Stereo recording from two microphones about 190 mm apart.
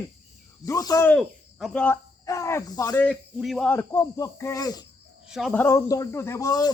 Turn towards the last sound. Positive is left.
turn(degrees=20)  # may be behind; listen again after turning